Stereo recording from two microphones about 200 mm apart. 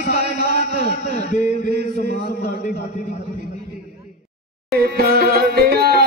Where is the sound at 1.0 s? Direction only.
35° left (ahead or behind).